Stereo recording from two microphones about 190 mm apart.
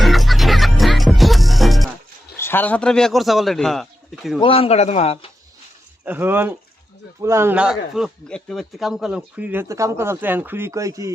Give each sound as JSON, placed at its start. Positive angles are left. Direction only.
{"t": 0.0, "sound": "music", "side_deg": 0}
{"t": 2.3, "sound": "a man's voice", "side_deg": 10}
{"t": 4.4, "sound": "speech", "side_deg": 30}
{"t": 6.1, "sound": "speech", "side_deg": -10}